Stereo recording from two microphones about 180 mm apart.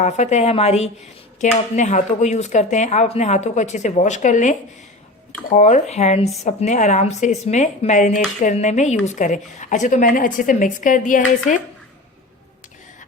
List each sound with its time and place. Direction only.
0.0 s a woman's voice: 40° left (ahead or behind)